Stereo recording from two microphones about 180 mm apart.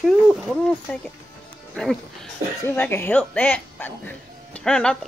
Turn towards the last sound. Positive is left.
turn(degrees=5)  # may be behind; listen again after turning